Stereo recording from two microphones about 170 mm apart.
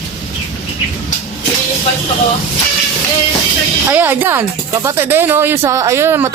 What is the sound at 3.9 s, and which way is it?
Speech, 10° right (ahead or behind).